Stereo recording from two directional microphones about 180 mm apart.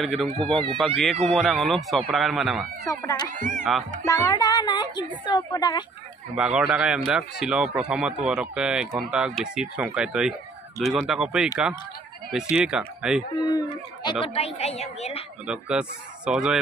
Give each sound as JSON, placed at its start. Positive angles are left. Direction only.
{"t": 0.0, "sound": "speech", "side_deg": 0}
{"t": 3.3, "sound": "speech", "side_deg": -45}
{"t": 4.0, "sound": "a woman's voice", "side_deg": 15}
{"t": 6.3, "sound": "speech", "side_deg": -5}
{"t": 13.3, "sound": "a woman's voice", "side_deg": 20}
{"t": 14.2, "sound": "a woman's voice", "side_deg": 35}
{"t": 15.4, "sound": "speech", "side_deg": -5}